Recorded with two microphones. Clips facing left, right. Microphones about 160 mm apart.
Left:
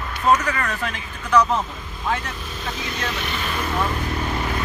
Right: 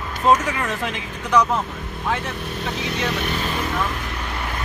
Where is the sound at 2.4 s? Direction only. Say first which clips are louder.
Right 4 dB; 65° right (ahead or behind).